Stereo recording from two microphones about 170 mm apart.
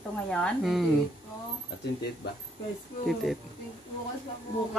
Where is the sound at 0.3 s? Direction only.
5° left (ahead or behind).